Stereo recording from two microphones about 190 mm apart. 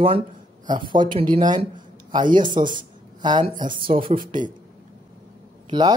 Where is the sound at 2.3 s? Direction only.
45° right (ahead or behind).